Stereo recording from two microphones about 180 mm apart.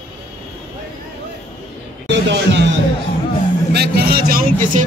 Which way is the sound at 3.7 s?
60° right (ahead or behind).